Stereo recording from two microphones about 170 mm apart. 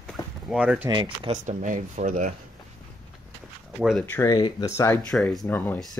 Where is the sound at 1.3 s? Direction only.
45° right (ahead or behind).